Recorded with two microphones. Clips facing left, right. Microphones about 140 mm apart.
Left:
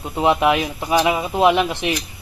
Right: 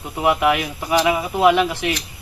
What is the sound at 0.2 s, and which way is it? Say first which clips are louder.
Speech: left 1 dB; 25° left (ahead or behind).